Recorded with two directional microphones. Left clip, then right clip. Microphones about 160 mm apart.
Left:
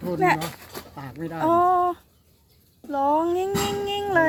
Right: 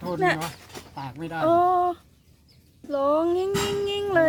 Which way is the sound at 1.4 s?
20° right (ahead or behind).